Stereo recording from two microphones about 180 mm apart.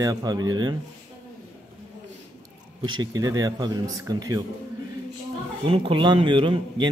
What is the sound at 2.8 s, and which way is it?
Speech, 25° right (ahead or behind).